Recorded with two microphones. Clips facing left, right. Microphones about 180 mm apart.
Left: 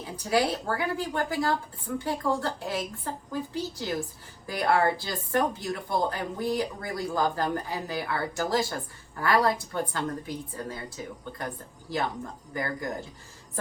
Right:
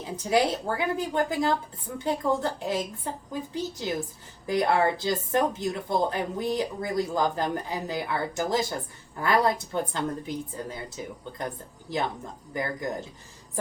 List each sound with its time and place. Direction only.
0.0 s a woman's voice: 20° right (ahead or behind)